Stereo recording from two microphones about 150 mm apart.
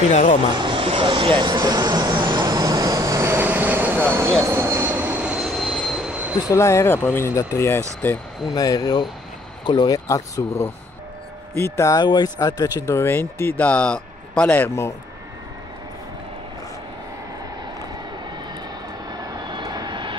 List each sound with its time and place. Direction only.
0.1 s speech: 55° left (ahead or behind)
0.6 s vehicle: 35° right (ahead or behind); by 6.4 s 10° right (ahead or behind)
6.5 s speech: 20° left (ahead or behind)
8.5 s speech: 25° left (ahead or behind)
19.1 s vehicle: 25° right (ahead or behind)